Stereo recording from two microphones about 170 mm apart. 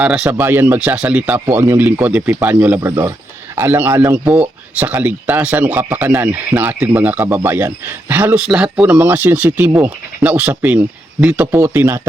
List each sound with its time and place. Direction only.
0.0 s speech: 5° right (ahead or behind)